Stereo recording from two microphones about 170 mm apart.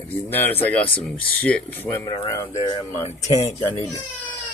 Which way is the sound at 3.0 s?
40° left (ahead or behind).